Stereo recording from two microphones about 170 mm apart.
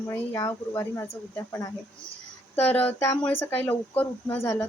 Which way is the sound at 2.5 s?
10° left (ahead or behind).